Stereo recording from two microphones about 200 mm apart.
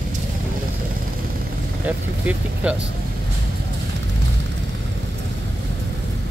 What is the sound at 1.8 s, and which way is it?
Speech, 5° right (ahead or behind).